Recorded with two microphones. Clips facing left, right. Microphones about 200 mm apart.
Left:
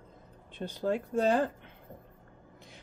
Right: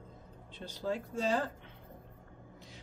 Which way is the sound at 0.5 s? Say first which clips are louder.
Left 5 dB; 55° left (ahead or behind).